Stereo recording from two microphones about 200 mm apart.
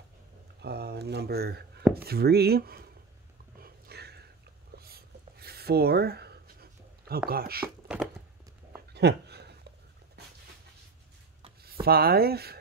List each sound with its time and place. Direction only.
0.6 s speech: 55° right (ahead or behind)
3.6 s a sound: 55° right (ahead or behind)
4.7 s writing: 50° right (ahead or behind)
7.2 s speech: 50° right (ahead or behind)
8.9 s a sound: 55° right (ahead or behind)
11.8 s speech: 50° right (ahead or behind)